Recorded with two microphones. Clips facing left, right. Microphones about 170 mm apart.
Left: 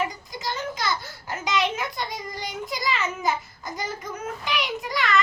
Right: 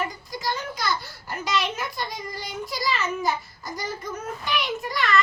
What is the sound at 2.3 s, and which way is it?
Child singing, 20° left (ahead or behind).